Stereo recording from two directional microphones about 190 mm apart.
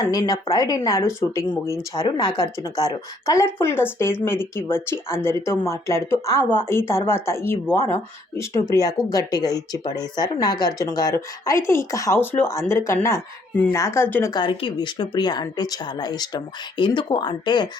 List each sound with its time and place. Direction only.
0.0 s speech: 20° left (ahead or behind)